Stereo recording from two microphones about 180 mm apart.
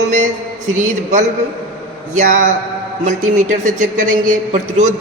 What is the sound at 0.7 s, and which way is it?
A woman's voice, 45° right (ahead or behind).